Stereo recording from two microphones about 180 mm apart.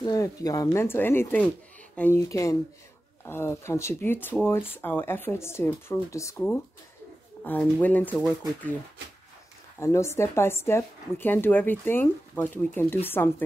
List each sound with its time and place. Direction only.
0.0 s a woman's voice: 20° left (ahead or behind)
9.8 s a woman's voice: 15° left (ahead or behind)